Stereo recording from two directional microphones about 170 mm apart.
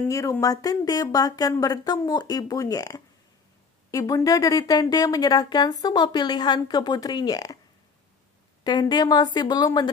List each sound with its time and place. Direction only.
0.1 s speech: 20° left (ahead or behind)
8.6 s speech: 25° left (ahead or behind)